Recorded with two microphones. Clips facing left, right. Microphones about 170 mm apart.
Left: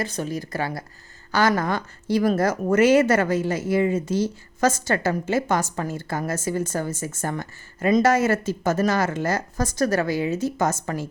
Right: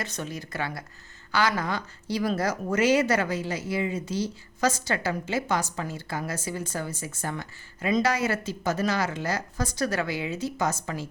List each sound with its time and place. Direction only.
0.0 s speech: 35° left (ahead or behind)